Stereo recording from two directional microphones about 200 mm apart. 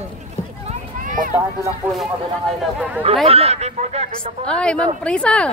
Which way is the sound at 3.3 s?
30° right (ahead or behind).